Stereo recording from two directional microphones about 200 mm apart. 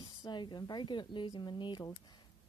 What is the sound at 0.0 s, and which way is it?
Speech, 20° left (ahead or behind).